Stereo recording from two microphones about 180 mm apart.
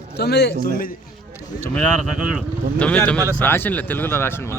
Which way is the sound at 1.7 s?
5° right (ahead or behind).